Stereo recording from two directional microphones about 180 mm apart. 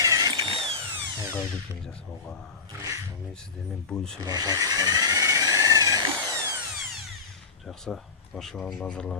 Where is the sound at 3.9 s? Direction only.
5° left (ahead or behind).